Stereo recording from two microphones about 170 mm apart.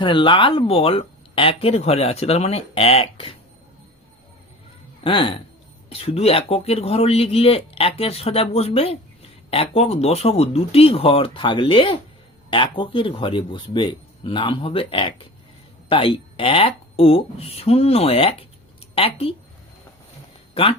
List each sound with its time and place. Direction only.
0.0 s speech: 30° left (ahead or behind)
5.0 s speech: 30° left (ahead or behind)
20.5 s speech: 35° left (ahead or behind)